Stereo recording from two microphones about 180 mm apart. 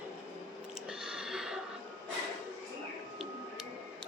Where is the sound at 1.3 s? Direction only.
5° right (ahead or behind).